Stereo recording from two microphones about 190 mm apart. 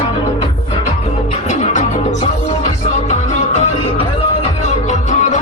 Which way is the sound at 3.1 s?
35° left (ahead or behind).